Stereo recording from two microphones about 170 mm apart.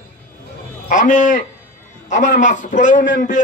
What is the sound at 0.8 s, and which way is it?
A man's voice, 50° left (ahead or behind).